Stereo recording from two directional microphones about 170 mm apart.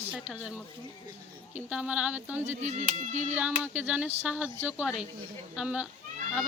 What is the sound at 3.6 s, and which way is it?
Stir, 10° right (ahead or behind).